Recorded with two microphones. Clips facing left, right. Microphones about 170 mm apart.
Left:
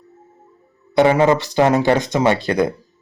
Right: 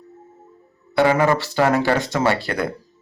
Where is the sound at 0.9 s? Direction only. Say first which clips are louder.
Left 3 dB; 20° left (ahead or behind).